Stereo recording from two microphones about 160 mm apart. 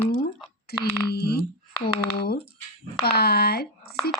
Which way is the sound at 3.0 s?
85° left.